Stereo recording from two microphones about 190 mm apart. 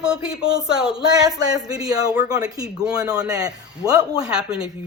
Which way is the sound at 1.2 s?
20° right (ahead or behind).